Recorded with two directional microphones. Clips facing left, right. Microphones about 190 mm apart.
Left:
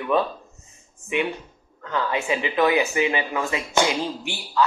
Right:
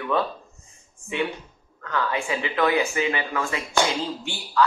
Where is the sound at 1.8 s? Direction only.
20° left (ahead or behind).